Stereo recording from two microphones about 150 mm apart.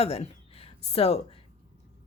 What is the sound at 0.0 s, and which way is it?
Speech, 45° left (ahead or behind).